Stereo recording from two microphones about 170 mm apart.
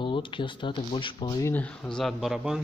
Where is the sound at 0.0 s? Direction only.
30° left (ahead or behind).